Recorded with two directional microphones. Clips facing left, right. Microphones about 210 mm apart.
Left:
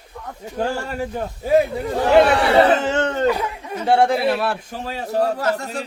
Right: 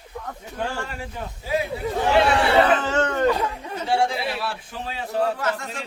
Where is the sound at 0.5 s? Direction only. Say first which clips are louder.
Left 7 dB; 40° left (ahead or behind).